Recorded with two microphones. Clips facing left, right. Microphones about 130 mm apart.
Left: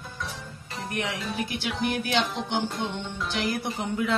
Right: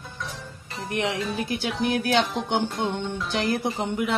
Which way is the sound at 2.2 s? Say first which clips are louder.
Right 3 dB; centre (ahead or behind).